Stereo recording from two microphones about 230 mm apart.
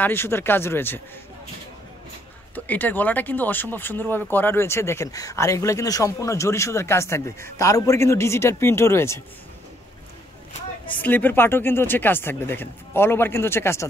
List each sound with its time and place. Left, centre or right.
0.0 s speech: centre
2.5 s speech: centre
10.9 s speech: centre